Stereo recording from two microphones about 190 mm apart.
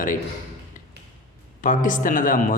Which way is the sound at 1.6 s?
45° left (ahead or behind).